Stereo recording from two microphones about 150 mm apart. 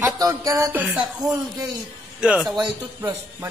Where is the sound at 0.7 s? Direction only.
5° right (ahead or behind).